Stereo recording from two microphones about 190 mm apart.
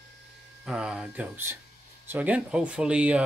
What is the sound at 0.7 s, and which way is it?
Speech, 5° right (ahead or behind).